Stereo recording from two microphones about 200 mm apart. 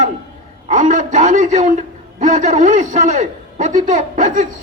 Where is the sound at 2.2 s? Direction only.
35° right (ahead or behind).